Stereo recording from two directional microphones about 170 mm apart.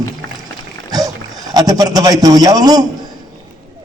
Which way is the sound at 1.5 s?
20° right (ahead or behind).